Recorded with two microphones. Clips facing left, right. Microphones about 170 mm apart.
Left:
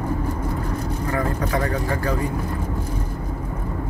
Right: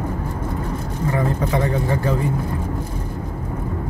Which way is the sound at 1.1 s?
20° right (ahead or behind).